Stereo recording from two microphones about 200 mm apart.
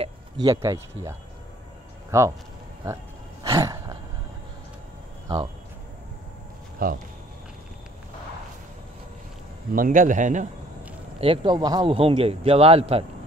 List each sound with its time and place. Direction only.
0.0 s speech: 20° right (ahead or behind)
3.4 s a sound: 15° right (ahead or behind)
6.8 s speech: 45° right (ahead or behind)
9.8 s a man's voice: 40° right (ahead or behind)
11.1 s a man's voice: 25° right (ahead or behind)